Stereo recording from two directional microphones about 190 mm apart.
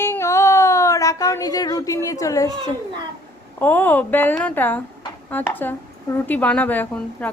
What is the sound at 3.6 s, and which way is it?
A woman's voice, 10° left (ahead or behind).